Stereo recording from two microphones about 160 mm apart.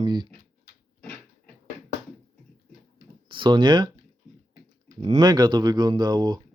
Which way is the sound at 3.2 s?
30° right (ahead or behind).